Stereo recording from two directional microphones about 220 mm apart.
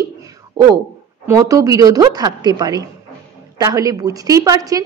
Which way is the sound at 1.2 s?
15° right (ahead or behind).